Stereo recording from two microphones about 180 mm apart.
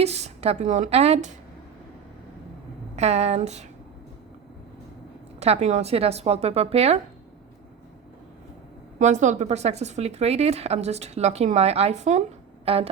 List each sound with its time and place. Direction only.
0.0 s speech: 35° right (ahead or behind)
2.9 s speech: 35° right (ahead or behind)
5.4 s speech: 35° right (ahead or behind)
9.0 s speech: 45° right (ahead or behind)
12.6 s a sound: 30° right (ahead or behind)